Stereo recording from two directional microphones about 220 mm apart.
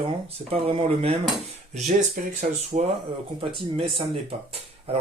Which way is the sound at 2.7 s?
30° right (ahead or behind).